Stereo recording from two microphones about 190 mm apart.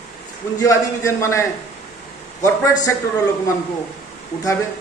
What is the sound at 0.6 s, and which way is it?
Speech, 15° left (ahead or behind).